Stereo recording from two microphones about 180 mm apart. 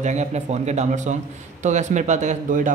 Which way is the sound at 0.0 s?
40° right (ahead or behind).